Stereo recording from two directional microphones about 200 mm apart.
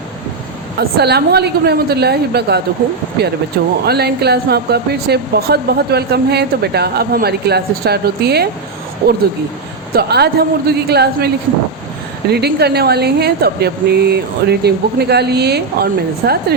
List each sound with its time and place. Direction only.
0.8 s speech: 55° right (ahead or behind)
12.3 s speech: 55° right (ahead or behind)